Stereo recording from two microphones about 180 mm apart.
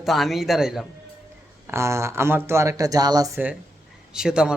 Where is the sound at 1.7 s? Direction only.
15° right (ahead or behind).